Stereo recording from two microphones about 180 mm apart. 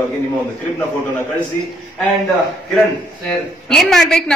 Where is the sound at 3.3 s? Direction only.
Centre (ahead or behind).